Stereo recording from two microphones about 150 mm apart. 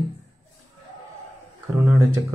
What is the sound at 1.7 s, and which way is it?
Speech, 5° right (ahead or behind).